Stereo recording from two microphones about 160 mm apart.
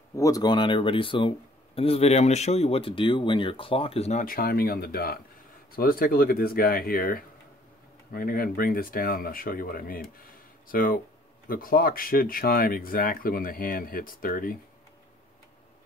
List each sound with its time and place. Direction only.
0.1 s speech: 20° left (ahead or behind); by 4.2 s 40° left (ahead or behind)
4.2 s speech: 65° left (ahead or behind)